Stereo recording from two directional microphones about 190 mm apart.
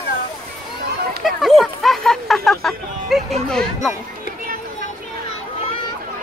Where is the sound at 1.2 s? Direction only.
Centre (ahead or behind).